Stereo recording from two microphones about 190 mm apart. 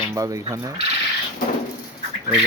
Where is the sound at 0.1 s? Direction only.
15° right (ahead or behind).